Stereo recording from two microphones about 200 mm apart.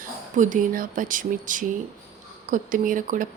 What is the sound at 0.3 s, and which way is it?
A woman's voice, 40° right (ahead or behind).